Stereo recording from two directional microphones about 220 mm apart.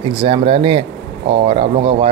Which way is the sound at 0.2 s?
25° right (ahead or behind).